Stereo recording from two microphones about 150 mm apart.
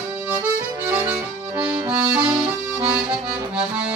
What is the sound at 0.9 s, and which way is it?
Music, 10° right (ahead or behind).